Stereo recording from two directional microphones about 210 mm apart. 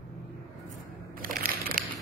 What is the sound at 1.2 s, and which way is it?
Crushing, 45° right (ahead or behind).